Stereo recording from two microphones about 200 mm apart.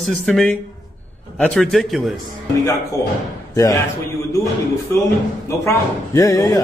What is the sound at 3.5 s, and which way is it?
Speech, 15° left (ahead or behind).